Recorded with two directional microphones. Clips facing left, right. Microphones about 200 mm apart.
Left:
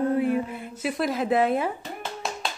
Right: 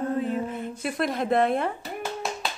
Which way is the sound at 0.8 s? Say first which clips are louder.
Left 2 dB; 5° left (ahead or behind).